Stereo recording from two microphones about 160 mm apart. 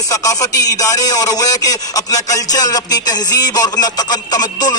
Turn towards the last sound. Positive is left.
turn(degrees=25)  # may be behind; listen again after turning